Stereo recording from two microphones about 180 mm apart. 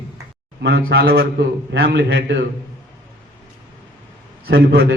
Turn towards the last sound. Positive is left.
turn(degrees=-90)